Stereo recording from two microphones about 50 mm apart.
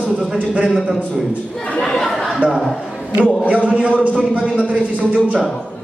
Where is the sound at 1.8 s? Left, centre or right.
Centre.